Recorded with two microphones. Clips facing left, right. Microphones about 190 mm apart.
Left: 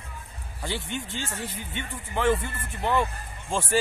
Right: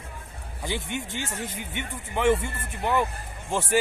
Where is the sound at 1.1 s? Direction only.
15° right (ahead or behind).